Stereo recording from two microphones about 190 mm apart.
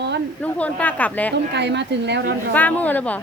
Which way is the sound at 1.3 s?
65° right (ahead or behind).